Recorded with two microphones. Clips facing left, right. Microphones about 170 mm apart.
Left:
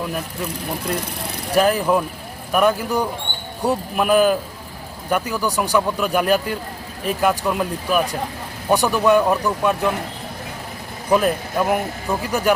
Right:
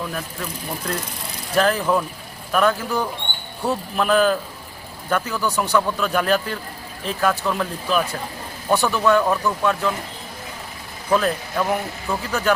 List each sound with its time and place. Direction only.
1.5 s speech: 15° left (ahead or behind)
11.1 s speech: 15° left (ahead or behind)